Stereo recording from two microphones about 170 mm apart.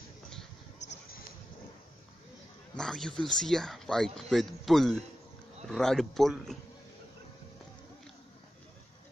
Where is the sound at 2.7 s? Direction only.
5° left (ahead or behind).